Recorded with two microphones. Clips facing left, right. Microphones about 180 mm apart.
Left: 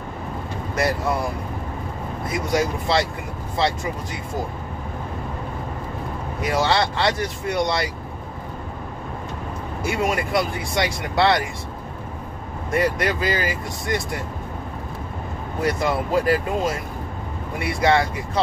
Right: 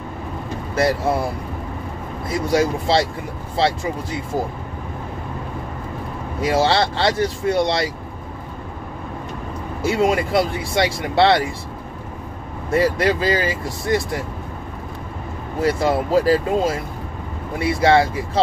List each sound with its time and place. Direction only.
0.7 s speech: 30° right (ahead or behind)
2.5 s speech: 30° right (ahead or behind)
6.4 s speech: 30° right (ahead or behind)
9.8 s speech: 30° right (ahead or behind)
12.7 s speech: 30° right (ahead or behind)
15.6 s speech: 30° right (ahead or behind)